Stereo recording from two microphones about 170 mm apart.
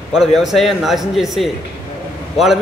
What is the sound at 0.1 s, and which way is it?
A man's voice, centre (ahead or behind).